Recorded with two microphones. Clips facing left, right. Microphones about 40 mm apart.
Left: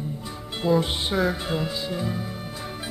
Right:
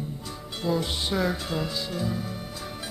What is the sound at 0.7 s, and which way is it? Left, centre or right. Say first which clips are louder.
Music: left 5 dB; centre.